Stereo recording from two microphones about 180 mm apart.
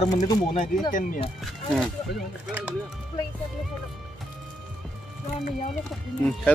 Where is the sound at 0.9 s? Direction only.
45° left (ahead or behind).